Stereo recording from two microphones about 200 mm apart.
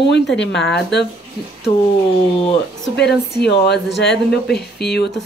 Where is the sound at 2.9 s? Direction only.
55° left (ahead or behind).